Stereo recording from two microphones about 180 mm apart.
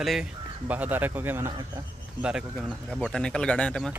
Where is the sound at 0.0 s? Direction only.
5° right (ahead or behind).